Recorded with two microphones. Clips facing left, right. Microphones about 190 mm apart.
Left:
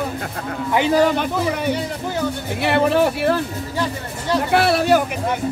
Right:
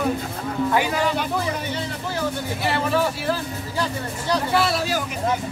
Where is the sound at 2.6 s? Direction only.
60° left (ahead or behind).